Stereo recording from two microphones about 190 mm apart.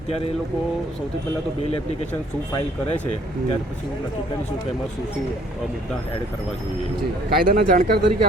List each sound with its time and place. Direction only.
7.3 s speech: 50° right (ahead or behind)